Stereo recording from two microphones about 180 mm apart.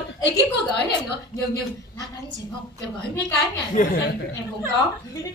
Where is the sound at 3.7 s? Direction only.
55° left (ahead or behind).